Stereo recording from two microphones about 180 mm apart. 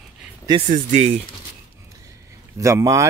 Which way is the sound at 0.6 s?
40° right (ahead or behind).